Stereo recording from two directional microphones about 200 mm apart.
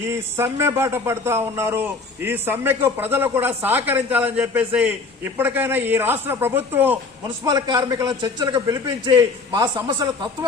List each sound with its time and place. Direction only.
0.0 s speech: 15° right (ahead or behind)
7.3 s a man's voice: 20° right (ahead or behind)